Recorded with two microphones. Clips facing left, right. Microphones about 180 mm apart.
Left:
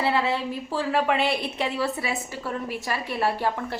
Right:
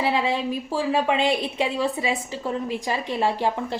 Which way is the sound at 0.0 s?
15° right (ahead or behind).